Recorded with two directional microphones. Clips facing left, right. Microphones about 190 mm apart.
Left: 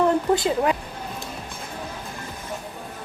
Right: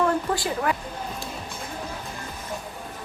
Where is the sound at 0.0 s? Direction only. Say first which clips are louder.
Left 4 dB; 20° left (ahead or behind).